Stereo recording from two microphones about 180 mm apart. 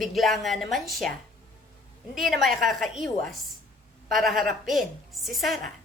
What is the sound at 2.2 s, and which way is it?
Speech, centre (ahead or behind).